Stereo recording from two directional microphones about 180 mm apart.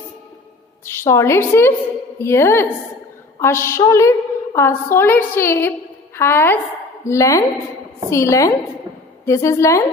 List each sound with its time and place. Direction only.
0.8 s a woman's voice: 15° left (ahead or behind)